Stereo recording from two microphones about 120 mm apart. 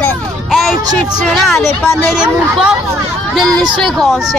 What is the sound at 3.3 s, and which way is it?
A child's voice, 5° left (ahead or behind).